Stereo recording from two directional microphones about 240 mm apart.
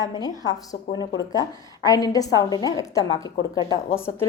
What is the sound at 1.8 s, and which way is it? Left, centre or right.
A woman's voice, centre.